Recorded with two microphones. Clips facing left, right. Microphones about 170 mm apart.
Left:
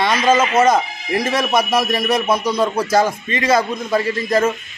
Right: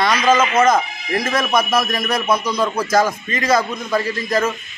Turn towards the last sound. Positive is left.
turn(degrees=25)  # may be behind; listen again after turning